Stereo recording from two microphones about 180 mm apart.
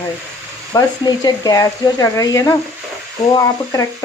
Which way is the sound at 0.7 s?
20° left (ahead or behind).